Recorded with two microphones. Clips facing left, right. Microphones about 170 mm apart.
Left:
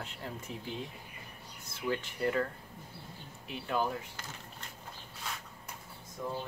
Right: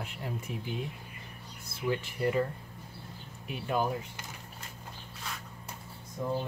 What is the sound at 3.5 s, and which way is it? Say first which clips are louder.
Speech: right 2 dB; 15° right (ahead or behind).